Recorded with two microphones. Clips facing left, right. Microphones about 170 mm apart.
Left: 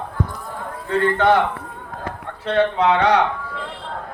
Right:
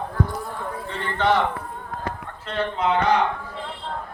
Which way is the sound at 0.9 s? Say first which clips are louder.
Left 6 dB; 55° left (ahead or behind).